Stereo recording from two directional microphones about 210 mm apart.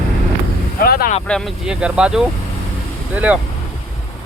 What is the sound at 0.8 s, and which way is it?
Vehicle, 45° left (ahead or behind).